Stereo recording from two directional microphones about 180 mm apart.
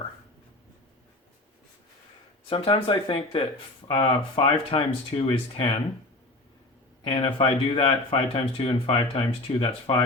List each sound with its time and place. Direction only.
2.5 s speech: 30° left (ahead or behind)
7.0 s speech: 30° left (ahead or behind)